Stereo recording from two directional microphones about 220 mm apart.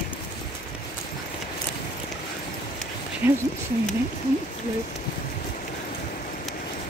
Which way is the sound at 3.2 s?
10° right (ahead or behind).